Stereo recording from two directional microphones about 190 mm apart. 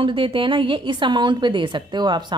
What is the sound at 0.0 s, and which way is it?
Speech, 30° right (ahead or behind).